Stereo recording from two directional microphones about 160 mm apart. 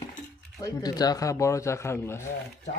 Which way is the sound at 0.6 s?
25° left (ahead or behind).